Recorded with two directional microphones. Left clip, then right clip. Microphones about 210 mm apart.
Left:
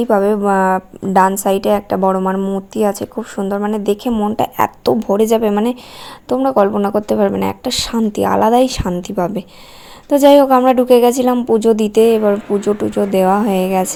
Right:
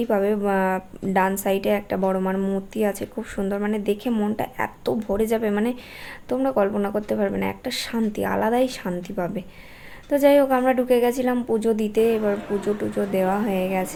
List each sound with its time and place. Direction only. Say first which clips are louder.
0.0 s a woman's voice: left 8 dB; 25° left (ahead or behind)
4.4 s a woman's voice: left 11 dB; 35° left (ahead or behind)